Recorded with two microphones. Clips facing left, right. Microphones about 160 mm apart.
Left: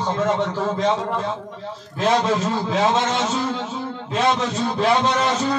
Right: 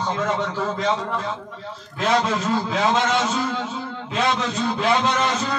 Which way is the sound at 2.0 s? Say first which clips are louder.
Left 2 dB; 30° left (ahead or behind).